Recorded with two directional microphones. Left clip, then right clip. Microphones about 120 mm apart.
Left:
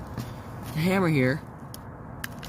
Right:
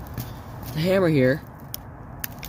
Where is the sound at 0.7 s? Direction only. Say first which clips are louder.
Right 5 dB; 90° left.